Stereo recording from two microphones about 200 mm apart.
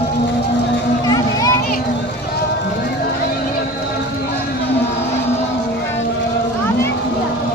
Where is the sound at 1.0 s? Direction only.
20° left (ahead or behind).